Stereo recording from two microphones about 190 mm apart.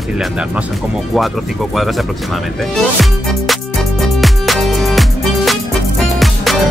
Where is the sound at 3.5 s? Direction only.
Centre (ahead or behind).